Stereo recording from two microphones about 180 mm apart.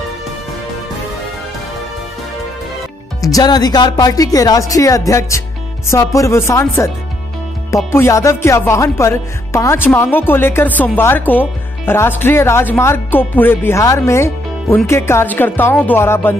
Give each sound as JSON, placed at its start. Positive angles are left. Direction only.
{"t": 3.2, "sound": "speech", "side_deg": 20}
{"t": 5.9, "sound": "music", "side_deg": 15}